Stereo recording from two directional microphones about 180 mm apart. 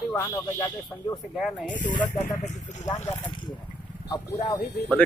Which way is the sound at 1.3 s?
Centre (ahead or behind).